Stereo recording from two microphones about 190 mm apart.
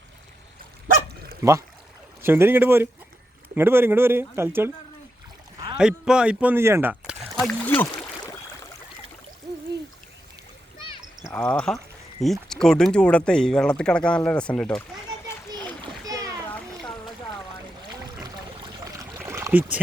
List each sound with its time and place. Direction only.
1.4 s speech: 15° right (ahead or behind)
5.7 s speech: 5° right (ahead or behind)
11.3 s speech: 10° left (ahead or behind)
16.0 s splash: 20° right (ahead or behind)
18.9 s rowboat: 15° right (ahead or behind)